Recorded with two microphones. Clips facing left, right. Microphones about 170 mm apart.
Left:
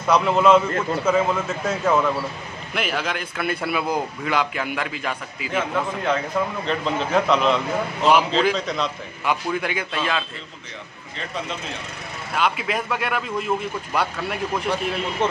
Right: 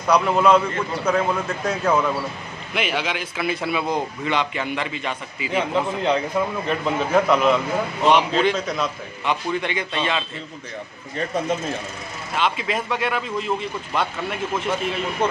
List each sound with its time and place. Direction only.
0.0 s a man's voice: centre (ahead or behind)
5.5 s a man's voice: 20° right (ahead or behind); by 10.2 s centre (ahead or behind)
11.1 s speech: 45° right (ahead or behind)
12.4 s a man's voice: centre (ahead or behind)